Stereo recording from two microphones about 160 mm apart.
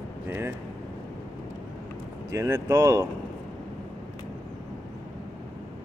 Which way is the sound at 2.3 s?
20° right (ahead or behind).